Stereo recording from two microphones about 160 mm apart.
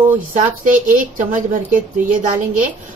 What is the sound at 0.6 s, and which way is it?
A woman's voice, 55° right (ahead or behind).